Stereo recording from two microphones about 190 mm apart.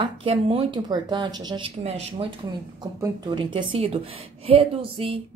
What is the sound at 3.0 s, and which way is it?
A woman's voice, 25° right (ahead or behind).